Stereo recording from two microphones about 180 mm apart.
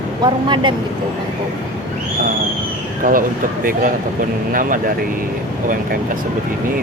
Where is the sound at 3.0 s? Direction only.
50° right (ahead or behind).